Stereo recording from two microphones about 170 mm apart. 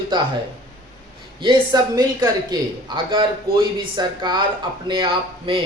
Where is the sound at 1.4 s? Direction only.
25° right (ahead or behind).